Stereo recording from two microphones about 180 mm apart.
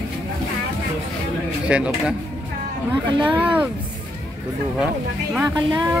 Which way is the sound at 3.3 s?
10° right (ahead or behind).